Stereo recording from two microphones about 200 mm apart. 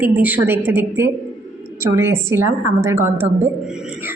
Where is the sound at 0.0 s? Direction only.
10° right (ahead or behind).